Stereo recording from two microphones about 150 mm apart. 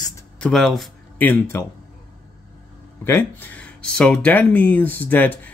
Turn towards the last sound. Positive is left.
turn(degrees=10)  # may be behind; listen again after turning